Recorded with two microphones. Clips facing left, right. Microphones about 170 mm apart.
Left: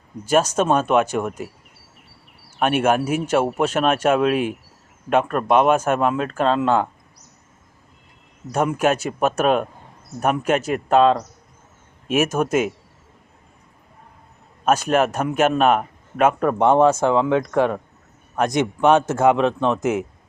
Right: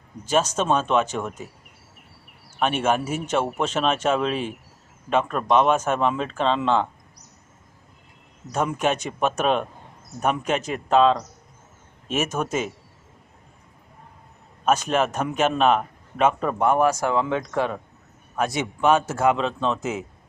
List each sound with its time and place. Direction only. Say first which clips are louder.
0.3 s a man's voice: left 4 dB; 10° left (ahead or behind)
2.6 s a man's voice: left 4 dB; 10° left (ahead or behind)
8.5 s a man's voice: left 4 dB; 5° left (ahead or behind)
14.6 s a man's voice: left 3 dB; 10° left (ahead or behind)
16.6 s a man's voice: left 6 dB; 25° left (ahead or behind)
18.8 s a man's voice: left 3 dB; 20° left (ahead or behind)